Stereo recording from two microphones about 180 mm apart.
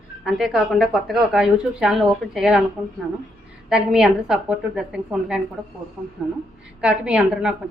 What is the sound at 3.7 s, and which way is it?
A woman's voice, 5° right (ahead or behind).